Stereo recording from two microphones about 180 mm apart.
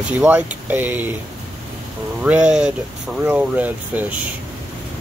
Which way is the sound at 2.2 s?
5° right (ahead or behind).